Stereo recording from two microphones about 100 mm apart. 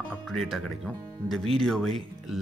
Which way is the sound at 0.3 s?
Centre (ahead or behind).